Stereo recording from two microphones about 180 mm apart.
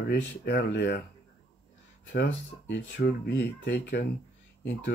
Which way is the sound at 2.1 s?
75° left (ahead or behind).